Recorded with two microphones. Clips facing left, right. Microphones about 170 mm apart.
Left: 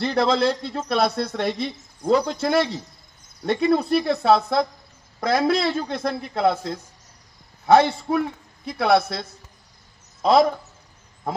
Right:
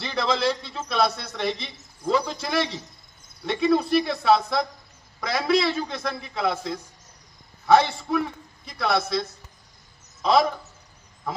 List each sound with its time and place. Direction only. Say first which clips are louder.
0.0 s a man's voice: left 5 dB; 55° left (ahead or behind)